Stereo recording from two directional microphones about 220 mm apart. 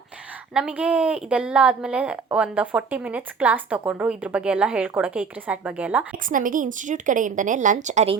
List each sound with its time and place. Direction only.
0.5 s a woman's voice: 5° right (ahead or behind)
6.2 s a woman's voice: 35° right (ahead or behind)